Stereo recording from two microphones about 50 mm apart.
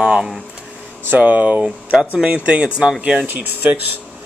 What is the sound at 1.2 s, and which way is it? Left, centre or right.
Speech, right.